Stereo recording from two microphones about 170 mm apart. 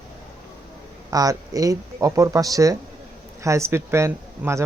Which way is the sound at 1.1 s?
20° right (ahead or behind).